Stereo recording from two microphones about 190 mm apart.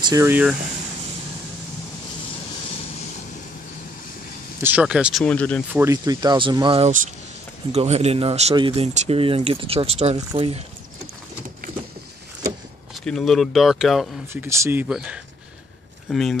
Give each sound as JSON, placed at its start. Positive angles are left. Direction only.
{"t": 0.0, "sound": "speech", "side_deg": -15}
{"t": 4.6, "sound": "speech", "side_deg": -10}
{"t": 5.2, "sound": "speech", "side_deg": 5}
{"t": 5.7, "sound": "speech", "side_deg": -15}
{"t": 13.0, "sound": "speech", "side_deg": 0}
{"t": 14.3, "sound": "speech", "side_deg": -15}